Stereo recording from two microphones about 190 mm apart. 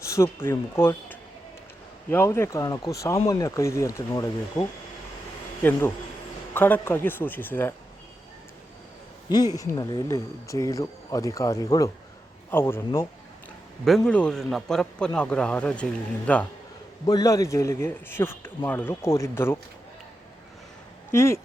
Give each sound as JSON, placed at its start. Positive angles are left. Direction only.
{"t": 0.0, "sound": "a man's voice", "side_deg": 15}
{"t": 6.5, "sound": "a man's voice", "side_deg": 10}
{"t": 9.6, "sound": "a man's voice", "side_deg": 20}
{"t": 13.8, "sound": "a man's voice", "side_deg": 5}
{"t": 17.1, "sound": "a man's voice", "side_deg": 20}
{"t": 21.1, "sound": "a man's voice", "side_deg": 15}